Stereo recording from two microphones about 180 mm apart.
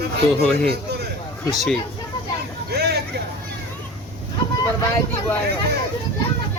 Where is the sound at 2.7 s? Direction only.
65° right (ahead or behind).